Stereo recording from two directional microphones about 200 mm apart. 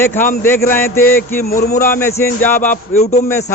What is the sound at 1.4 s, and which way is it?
Speech, 50° left (ahead or behind).